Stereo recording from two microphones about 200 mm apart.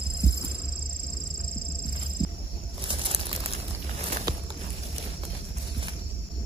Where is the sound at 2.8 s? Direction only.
25° right (ahead or behind).